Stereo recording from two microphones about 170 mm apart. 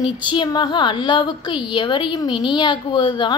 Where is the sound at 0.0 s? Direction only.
25° left (ahead or behind).